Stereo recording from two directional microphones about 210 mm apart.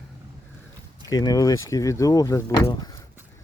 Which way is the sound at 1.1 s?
15° left (ahead or behind).